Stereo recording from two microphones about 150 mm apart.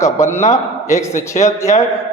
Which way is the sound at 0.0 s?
15° left (ahead or behind).